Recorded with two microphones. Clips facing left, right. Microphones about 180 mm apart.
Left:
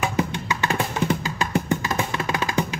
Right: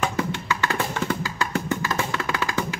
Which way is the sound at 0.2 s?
20° left (ahead or behind).